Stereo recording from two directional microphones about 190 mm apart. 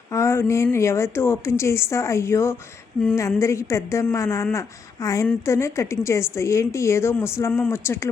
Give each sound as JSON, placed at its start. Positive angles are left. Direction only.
{"t": 0.1, "sound": "a woman's voice", "side_deg": 15}